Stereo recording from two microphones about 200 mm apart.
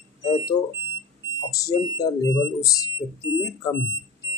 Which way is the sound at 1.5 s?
15° left (ahead or behind).